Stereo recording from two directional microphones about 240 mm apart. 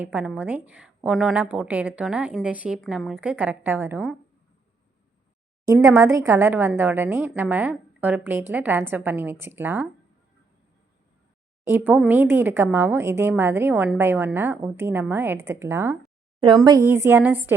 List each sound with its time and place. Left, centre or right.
0.0 s a woman's voice: centre
5.6 s speech: centre
11.6 s speech: centre
16.4 s speech: right
16.9 s speech: centre